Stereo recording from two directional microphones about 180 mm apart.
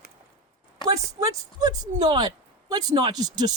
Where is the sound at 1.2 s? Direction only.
20° right (ahead or behind).